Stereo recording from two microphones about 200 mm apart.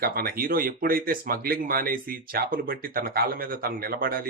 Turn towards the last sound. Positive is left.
turn(degrees=-45)  # may be behind; listen again after turning